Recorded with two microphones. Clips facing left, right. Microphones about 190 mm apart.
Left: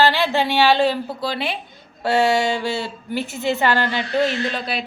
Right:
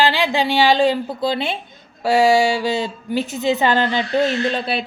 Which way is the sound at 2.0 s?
10° right (ahead or behind).